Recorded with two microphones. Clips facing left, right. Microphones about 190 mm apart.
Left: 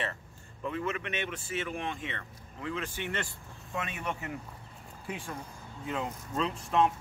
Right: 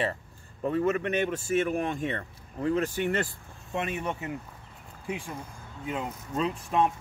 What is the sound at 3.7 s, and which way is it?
Speech, 25° right (ahead or behind).